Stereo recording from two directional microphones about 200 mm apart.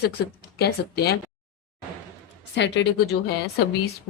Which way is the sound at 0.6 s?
50° left (ahead or behind).